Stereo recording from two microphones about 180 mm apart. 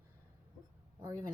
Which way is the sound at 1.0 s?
20° right (ahead or behind).